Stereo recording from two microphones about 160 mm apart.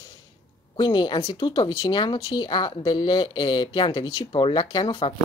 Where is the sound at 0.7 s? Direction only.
25° left (ahead or behind).